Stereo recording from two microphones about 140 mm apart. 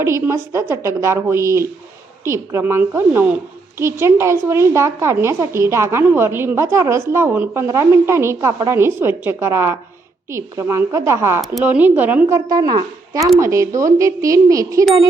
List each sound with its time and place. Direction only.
0.0 s a woman's voice: 20° right (ahead or behind)
12.5 s a woman's voice: 30° right (ahead or behind)